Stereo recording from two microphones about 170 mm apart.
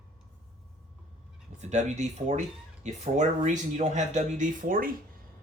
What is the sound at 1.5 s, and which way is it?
Speech, 45° right (ahead or behind).